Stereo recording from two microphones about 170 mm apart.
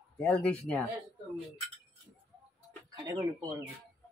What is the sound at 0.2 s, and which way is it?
Speech, 5° left (ahead or behind).